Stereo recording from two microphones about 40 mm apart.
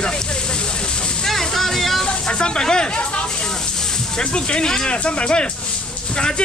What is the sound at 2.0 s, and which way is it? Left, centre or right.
Speech, left.